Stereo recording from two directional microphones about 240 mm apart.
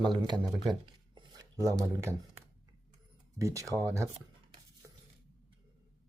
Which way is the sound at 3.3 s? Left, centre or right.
Centre.